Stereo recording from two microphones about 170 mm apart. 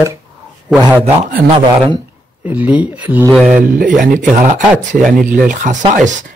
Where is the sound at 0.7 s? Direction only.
Centre (ahead or behind).